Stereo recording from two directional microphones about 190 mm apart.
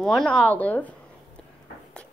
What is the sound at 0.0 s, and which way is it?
Speech, centre (ahead or behind).